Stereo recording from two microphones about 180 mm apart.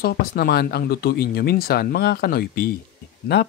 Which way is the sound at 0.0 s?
60° left (ahead or behind).